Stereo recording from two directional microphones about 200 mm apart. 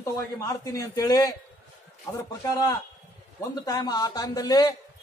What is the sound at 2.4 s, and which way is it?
A man's voice, 15° left (ahead or behind).